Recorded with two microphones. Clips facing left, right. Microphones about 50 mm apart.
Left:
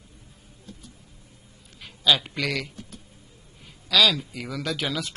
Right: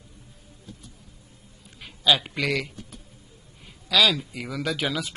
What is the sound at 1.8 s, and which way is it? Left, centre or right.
A man's voice, centre.